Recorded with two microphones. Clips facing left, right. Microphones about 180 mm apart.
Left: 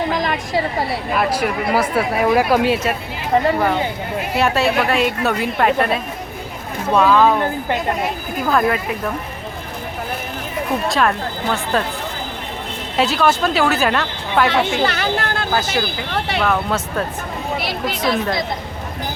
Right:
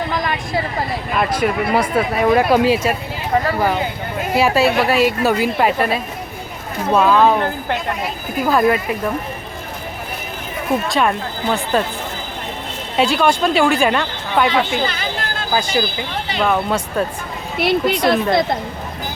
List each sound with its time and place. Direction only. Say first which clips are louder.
1.1 s speech: right 2 dB; 5° left (ahead or behind)
4.4 s speech: right 2 dB; centre (ahead or behind)
8.4 s speech: right 2 dB; 5° right (ahead or behind)
10.8 s speech: even; centre (ahead or behind)
13.0 s speech: right 1 dB; centre (ahead or behind)
14.4 s a woman's voice: left 2 dB; 65° left (ahead or behind)
15.5 s speech: right 4 dB; centre (ahead or behind)
17.6 s speech: right 11 dB; 60° right (ahead or behind)